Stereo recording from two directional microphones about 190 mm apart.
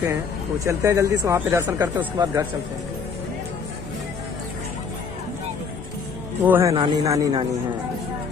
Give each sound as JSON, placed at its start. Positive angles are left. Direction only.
{"t": 0.7, "sound": "speech", "side_deg": -15}
{"t": 6.4, "sound": "speech", "side_deg": -10}
{"t": 6.7, "sound": "speech", "side_deg": -25}